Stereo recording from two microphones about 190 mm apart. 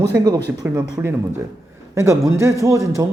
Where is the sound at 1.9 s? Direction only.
15° right (ahead or behind).